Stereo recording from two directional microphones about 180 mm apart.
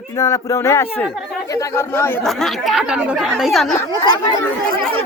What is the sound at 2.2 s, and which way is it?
Speech, centre (ahead or behind).